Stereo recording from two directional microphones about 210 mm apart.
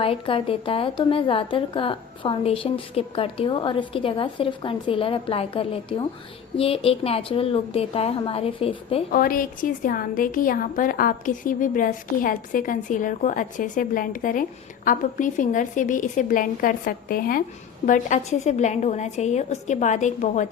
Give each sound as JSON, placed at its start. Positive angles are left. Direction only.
{"t": 0.0, "sound": "a woman's voice", "side_deg": 25}
{"t": 9.1, "sound": "a woman's voice", "side_deg": 45}